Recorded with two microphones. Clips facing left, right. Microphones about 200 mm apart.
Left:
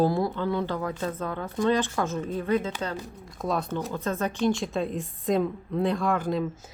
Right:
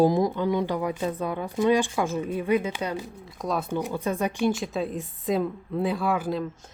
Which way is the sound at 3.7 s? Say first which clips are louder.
Right 2 dB; 15° right (ahead or behind).